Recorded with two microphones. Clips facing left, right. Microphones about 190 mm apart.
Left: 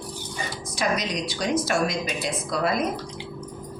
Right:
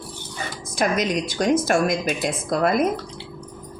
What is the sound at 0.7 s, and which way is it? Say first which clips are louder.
A woman's voice: right 5 dB; 50° right (ahead or behind).